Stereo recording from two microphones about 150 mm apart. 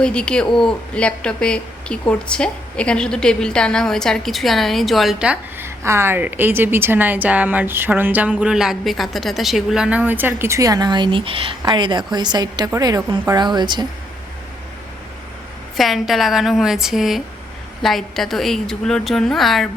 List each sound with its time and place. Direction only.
0.0 s a woman's voice: 5° left (ahead or behind); by 13.8 s 30° right (ahead or behind)
15.8 s a woman's voice: centre (ahead or behind)